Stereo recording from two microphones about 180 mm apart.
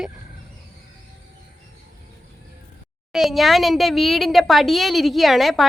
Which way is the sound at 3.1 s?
Centre (ahead or behind).